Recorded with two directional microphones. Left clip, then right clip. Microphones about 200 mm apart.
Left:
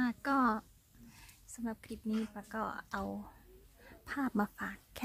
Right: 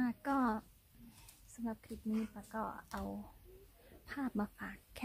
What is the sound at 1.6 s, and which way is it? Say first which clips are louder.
A woman's voice: left 2 dB; 25° left (ahead or behind).